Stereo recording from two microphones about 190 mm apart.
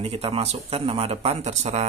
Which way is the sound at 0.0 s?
30° right (ahead or behind).